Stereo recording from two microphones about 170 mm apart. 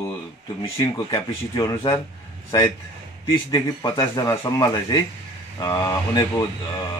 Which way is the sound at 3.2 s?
30° left (ahead or behind).